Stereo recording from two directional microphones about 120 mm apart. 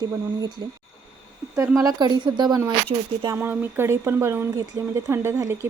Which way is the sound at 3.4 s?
20° right (ahead or behind).